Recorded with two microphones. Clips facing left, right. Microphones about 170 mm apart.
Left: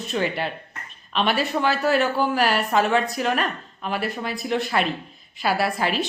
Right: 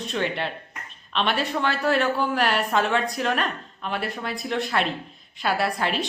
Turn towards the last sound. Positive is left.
turn(degrees=0)  # may be behind; listen again after turning